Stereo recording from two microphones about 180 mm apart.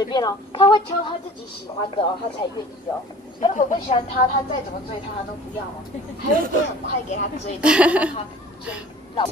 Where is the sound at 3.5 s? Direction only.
45° left (ahead or behind).